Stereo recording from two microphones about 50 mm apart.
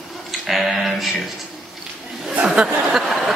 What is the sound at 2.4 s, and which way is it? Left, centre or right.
Speech, centre.